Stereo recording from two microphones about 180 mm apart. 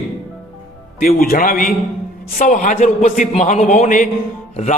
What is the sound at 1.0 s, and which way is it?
A man's voice, 55° left (ahead or behind).